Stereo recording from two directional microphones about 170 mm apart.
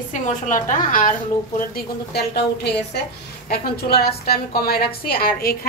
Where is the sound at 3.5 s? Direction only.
65° left (ahead or behind).